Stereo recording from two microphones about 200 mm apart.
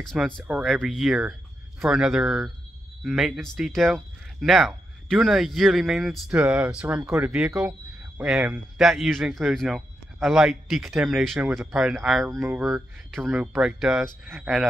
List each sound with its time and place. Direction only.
0.0 s speech: centre (ahead or behind)